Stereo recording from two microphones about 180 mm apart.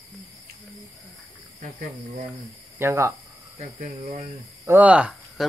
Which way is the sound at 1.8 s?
45° right (ahead or behind).